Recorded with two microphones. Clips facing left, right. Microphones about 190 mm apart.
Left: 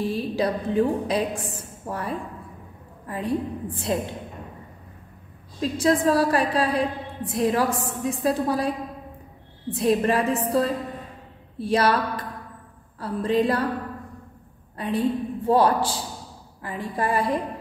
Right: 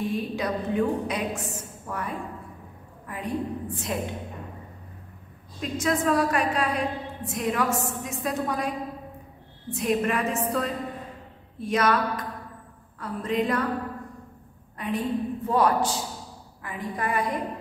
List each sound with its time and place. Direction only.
0.0 s a woman's voice: 35° left (ahead or behind)
5.6 s a woman's voice: 30° left (ahead or behind)
14.8 s a woman's voice: 30° left (ahead or behind)